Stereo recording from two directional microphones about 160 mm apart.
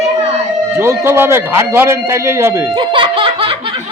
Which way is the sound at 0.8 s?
15° right (ahead or behind).